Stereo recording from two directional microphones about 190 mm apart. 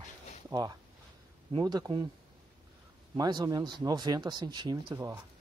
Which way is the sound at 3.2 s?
20° right (ahead or behind).